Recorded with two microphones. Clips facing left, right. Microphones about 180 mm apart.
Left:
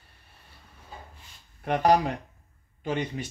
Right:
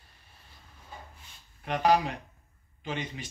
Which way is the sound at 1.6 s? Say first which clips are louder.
Left 3 dB; 45° left (ahead or behind).